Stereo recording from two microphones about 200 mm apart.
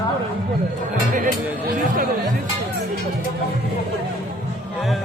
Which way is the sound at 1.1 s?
45° right (ahead or behind).